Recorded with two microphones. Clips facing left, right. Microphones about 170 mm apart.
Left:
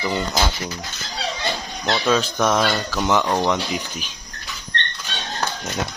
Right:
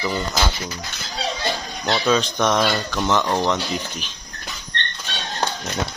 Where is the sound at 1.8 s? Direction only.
Centre (ahead or behind).